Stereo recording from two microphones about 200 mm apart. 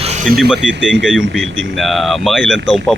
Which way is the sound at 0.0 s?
30° right (ahead or behind).